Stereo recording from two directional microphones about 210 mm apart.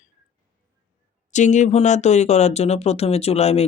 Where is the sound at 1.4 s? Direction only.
35° left (ahead or behind).